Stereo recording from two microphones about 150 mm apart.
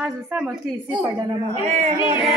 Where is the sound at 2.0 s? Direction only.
35° left (ahead or behind).